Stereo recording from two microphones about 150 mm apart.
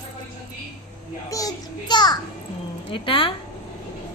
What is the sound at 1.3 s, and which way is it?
A child's voice, 25° left (ahead or behind).